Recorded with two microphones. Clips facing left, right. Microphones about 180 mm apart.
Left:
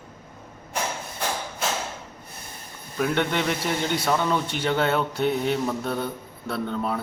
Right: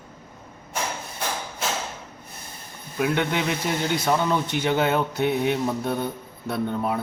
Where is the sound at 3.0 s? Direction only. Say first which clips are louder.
Even; 5° right (ahead or behind).